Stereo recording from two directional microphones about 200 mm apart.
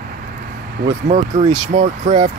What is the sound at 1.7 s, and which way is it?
Speech, 40° right (ahead or behind).